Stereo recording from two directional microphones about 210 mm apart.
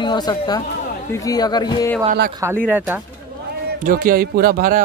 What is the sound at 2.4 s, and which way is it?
Speech, 10° right (ahead or behind).